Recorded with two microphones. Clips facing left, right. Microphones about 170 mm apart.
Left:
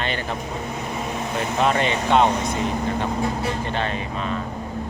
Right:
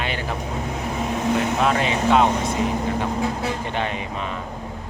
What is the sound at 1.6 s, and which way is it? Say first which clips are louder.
Speech: even; centre (ahead or behind).